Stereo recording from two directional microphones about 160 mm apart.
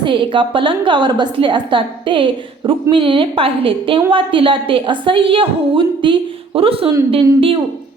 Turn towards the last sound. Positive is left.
turn(degrees=-35)  # may be behind; listen again after turning